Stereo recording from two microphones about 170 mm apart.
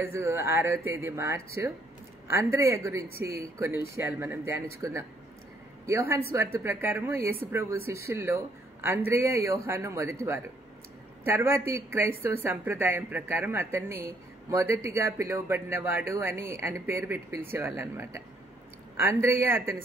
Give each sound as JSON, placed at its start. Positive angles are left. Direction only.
{"t": 0.0, "sound": "speech", "side_deg": -15}